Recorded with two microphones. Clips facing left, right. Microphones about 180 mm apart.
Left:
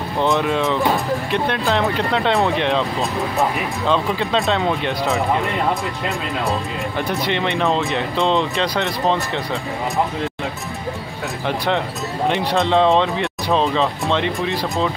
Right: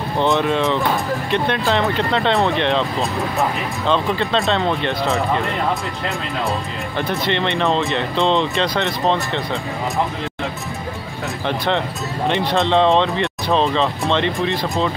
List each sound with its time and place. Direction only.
0.2 s speech: centre (ahead or behind)
7.0 s speech: 5° left (ahead or behind)
11.4 s speech: 5° left (ahead or behind)